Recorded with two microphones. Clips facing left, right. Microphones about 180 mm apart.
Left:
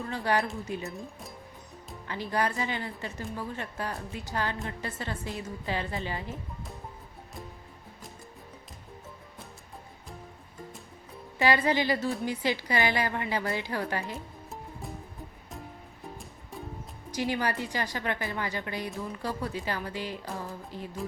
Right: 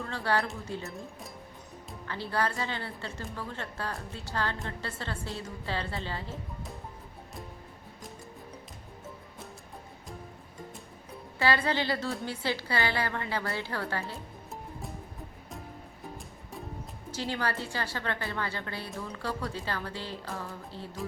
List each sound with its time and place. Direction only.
0.0 s a woman's voice: 15° left (ahead or behind)
0.9 s speech: centre (ahead or behind)
2.0 s a woman's voice: 15° left (ahead or behind)
11.3 s a woman's voice: 15° left (ahead or behind)
14.5 s music: centre (ahead or behind)
16.1 s music: centre (ahead or behind)
17.1 s a woman's voice: 15° left (ahead or behind)